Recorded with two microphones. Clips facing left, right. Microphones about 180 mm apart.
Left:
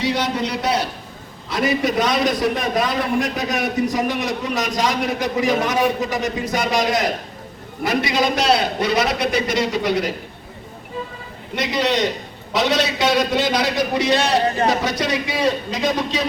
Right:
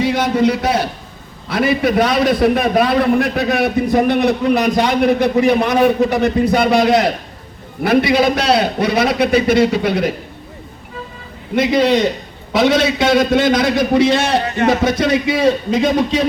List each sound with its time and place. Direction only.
0.0 s a man's voice: 50° right (ahead or behind)
11.5 s a man's voice: 55° right (ahead or behind)